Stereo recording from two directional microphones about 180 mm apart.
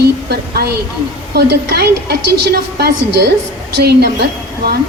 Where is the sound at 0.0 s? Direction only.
65° right (ahead or behind).